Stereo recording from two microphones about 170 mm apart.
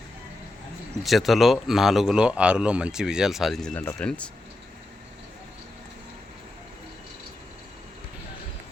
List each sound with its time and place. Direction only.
1.0 s speech: centre (ahead or behind)